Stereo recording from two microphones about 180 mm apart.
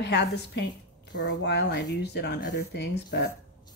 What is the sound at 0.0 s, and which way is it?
A woman's voice, 70° left (ahead or behind).